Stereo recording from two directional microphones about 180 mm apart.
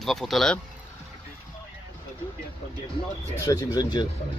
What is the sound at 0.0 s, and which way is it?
Speech, centre (ahead or behind).